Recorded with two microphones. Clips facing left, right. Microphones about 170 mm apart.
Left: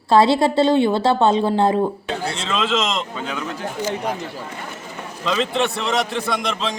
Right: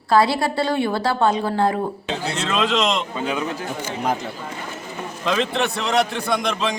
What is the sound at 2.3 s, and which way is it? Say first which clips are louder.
A man's voice: right 2 dB; centre (ahead or behind).